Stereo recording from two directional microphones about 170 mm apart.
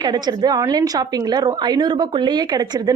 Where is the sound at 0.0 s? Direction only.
25° right (ahead or behind).